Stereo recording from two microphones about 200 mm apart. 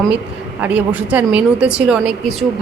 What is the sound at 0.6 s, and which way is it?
Speech, 5° right (ahead or behind).